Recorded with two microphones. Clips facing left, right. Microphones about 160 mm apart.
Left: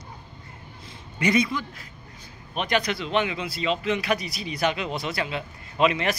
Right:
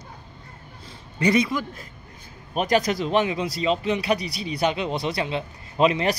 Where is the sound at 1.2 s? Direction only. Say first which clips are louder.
Right 2 dB; 30° right (ahead or behind).